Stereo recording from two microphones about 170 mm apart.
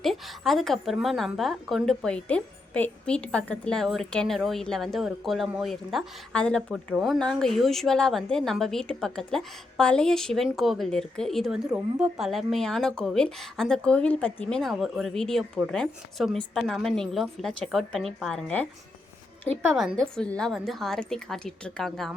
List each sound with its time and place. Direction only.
0.0 s a woman's voice: centre (ahead or behind)
19.7 s a woman's voice: centre (ahead or behind)